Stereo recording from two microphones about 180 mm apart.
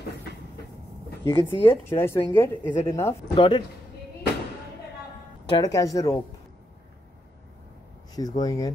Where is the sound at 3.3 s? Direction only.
25° left (ahead or behind).